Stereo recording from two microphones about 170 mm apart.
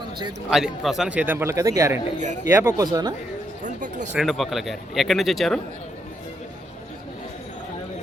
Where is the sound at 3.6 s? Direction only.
45° right (ahead or behind).